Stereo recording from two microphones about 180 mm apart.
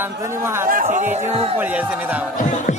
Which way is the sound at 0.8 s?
45° right (ahead or behind).